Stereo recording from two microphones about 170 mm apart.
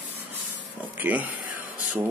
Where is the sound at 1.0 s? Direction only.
10° right (ahead or behind).